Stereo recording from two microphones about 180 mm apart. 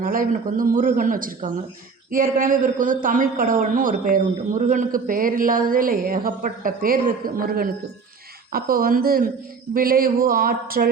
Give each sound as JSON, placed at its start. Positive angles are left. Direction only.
{"t": 0.0, "sound": "a man's voice", "side_deg": -50}